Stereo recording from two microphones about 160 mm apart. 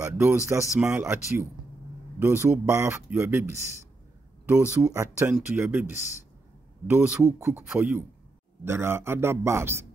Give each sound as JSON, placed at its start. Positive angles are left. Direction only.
{"t": 0.0, "sound": "speech", "side_deg": -15}